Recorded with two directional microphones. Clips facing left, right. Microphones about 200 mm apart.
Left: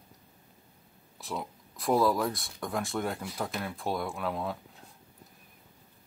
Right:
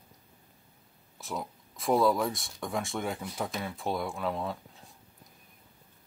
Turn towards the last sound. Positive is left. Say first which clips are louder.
# even
turn(degrees=0)  # may be behind; listen again after turning